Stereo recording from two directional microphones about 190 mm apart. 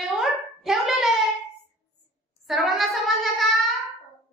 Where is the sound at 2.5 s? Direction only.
Centre (ahead or behind).